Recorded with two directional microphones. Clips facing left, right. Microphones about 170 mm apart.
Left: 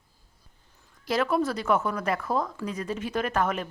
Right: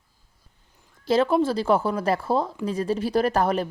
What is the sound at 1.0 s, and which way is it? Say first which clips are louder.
A woman's voice: right 5 dB; 30° right (ahead or behind).